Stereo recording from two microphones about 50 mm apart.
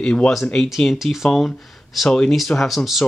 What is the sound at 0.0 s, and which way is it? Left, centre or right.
Speech, left.